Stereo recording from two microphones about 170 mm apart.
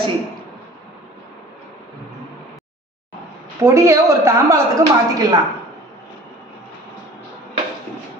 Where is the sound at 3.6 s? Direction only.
20° right (ahead or behind).